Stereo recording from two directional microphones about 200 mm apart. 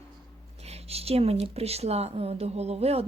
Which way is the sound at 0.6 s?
30° right (ahead or behind).